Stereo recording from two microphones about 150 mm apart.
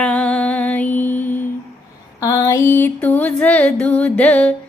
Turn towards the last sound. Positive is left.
turn(degrees=10)  # may be behind; listen again after turning